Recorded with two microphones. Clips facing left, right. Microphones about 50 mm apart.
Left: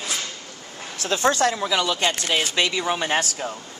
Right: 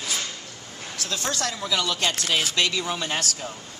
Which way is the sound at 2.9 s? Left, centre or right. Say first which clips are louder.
Left 5 dB; left.